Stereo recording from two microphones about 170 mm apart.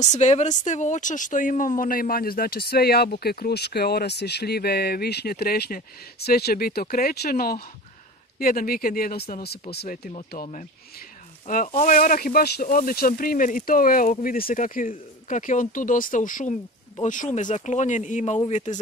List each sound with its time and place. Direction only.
0.0 s speech: 45° left (ahead or behind); by 10.1 s 60° left (ahead or behind)
10.3 s speech: 50° left (ahead or behind)